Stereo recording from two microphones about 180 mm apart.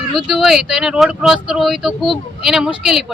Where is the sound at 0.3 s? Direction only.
Centre (ahead or behind).